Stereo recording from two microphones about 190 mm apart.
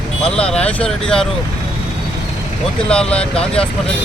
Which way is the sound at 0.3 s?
5° left (ahead or behind).